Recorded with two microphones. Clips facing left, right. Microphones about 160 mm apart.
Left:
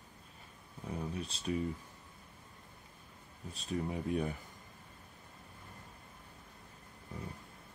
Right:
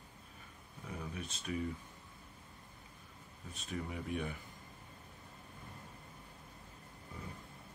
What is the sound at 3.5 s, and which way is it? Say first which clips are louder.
Speech: left 5 dB; 35° left (ahead or behind).